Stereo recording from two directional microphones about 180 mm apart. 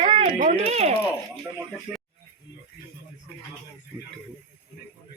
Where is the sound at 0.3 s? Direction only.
45° right (ahead or behind).